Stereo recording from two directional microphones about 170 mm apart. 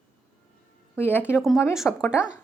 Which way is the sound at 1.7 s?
5° right (ahead or behind).